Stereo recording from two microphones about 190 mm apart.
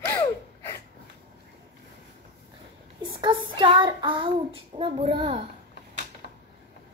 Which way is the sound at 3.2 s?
25° right (ahead or behind).